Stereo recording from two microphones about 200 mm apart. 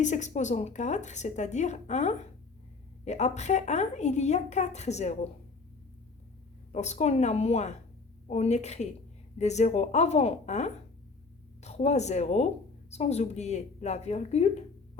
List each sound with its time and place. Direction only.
0.0 s a woman's voice: 35° left (ahead or behind)
6.7 s a woman's voice: 35° left (ahead or behind)